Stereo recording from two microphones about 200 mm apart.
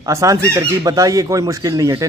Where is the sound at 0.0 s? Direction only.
15° right (ahead or behind).